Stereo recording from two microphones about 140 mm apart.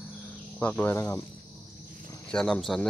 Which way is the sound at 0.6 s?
10° left (ahead or behind).